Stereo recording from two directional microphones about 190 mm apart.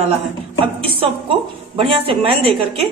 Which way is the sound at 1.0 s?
30° right (ahead or behind).